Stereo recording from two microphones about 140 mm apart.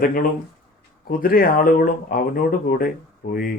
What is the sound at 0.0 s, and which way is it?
Speech, 90° left.